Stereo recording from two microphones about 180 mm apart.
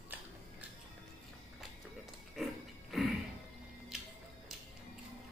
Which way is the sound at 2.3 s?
Centre (ahead or behind).